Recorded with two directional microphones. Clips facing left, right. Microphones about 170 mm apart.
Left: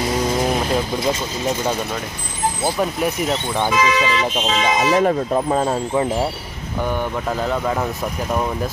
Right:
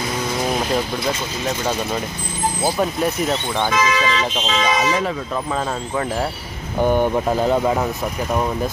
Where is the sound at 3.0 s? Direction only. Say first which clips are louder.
Even; 10° left (ahead or behind).